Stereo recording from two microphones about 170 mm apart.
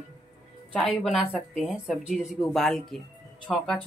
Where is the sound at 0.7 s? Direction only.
Centre (ahead or behind).